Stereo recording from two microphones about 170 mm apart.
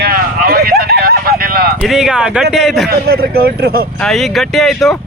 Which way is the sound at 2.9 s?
65° right (ahead or behind).